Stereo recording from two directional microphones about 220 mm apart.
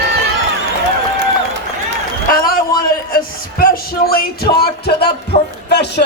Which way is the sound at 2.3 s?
40° left (ahead or behind).